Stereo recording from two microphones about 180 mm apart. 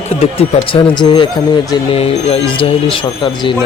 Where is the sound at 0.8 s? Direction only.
25° left (ahead or behind).